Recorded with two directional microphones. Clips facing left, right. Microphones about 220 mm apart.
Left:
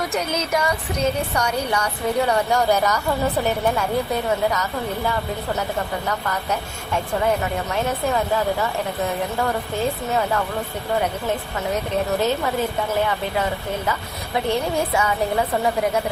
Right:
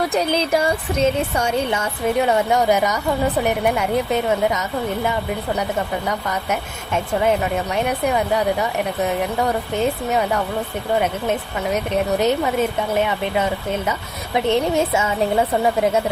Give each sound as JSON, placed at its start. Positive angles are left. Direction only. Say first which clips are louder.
{"t": 0.1, "sound": "a woman's voice", "louder": "right 4 dB", "side_deg": -35}